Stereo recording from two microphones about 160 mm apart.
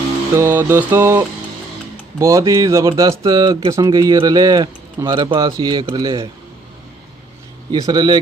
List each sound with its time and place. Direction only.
0.3 s mantra: 15° right (ahead or behind)
2.1 s speech: 20° right (ahead or behind)
7.7 s speech: 25° right (ahead or behind)